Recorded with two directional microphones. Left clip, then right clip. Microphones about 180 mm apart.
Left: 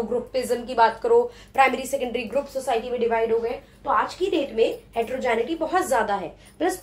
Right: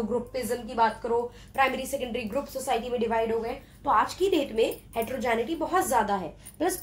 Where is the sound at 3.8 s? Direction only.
45° right (ahead or behind).